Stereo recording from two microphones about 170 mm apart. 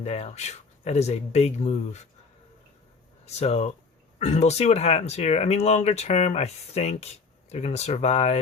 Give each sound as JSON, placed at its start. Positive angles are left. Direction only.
{"t": 0.0, "sound": "speech", "side_deg": 40}
{"t": 3.2, "sound": "speech", "side_deg": 40}